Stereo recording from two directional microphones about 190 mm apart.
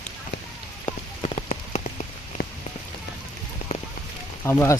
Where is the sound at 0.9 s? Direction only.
35° left (ahead or behind).